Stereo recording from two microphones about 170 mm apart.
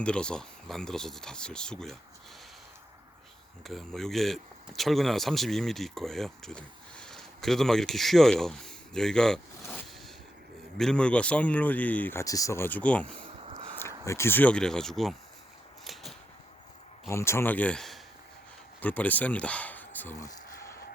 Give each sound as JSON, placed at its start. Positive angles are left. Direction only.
{"t": 0.0, "sound": "speech", "side_deg": 5}
{"t": 3.6, "sound": "speech", "side_deg": 0}
{"t": 13.5, "sound": "a sound", "side_deg": -35}
{"t": 13.7, "sound": "speech", "side_deg": 15}
{"t": 15.8, "sound": "a sound", "side_deg": 0}
{"t": 17.1, "sound": "speech", "side_deg": 15}